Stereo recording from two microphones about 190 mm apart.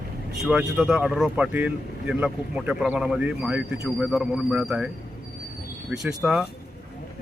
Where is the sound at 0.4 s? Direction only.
5° right (ahead or behind).